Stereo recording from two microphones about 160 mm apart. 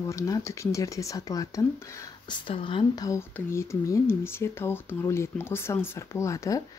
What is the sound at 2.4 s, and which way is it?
Speech, 30° left (ahead or behind).